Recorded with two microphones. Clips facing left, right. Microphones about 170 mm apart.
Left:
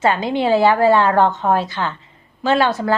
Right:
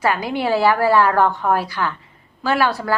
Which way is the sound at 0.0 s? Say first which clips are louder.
Left 3 dB; 25° left (ahead or behind).